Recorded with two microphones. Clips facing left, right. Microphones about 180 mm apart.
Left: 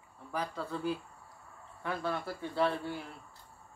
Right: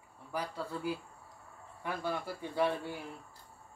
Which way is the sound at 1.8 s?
10° right (ahead or behind).